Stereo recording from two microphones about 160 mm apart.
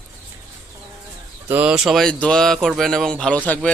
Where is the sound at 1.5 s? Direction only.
10° right (ahead or behind).